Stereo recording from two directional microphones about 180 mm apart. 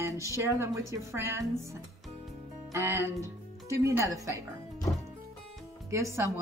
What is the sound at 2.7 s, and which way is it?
Speech, 15° right (ahead or behind).